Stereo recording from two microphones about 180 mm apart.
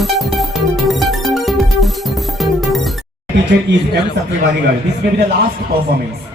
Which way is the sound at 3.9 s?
70° right (ahead or behind).